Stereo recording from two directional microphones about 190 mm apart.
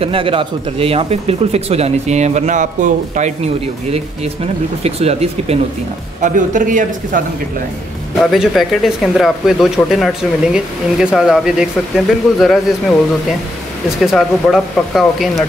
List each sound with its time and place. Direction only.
0.0 s speech: 30° right (ahead or behind)
4.8 s a man's voice: 35° right (ahead or behind)
8.2 s speech: centre (ahead or behind)